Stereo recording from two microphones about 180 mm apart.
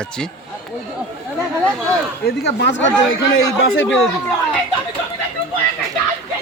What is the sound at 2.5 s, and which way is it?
A man's voice, 80° left.